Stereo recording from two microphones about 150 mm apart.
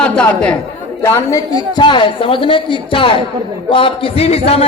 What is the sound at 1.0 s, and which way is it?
A woman's voice, 20° left (ahead or behind).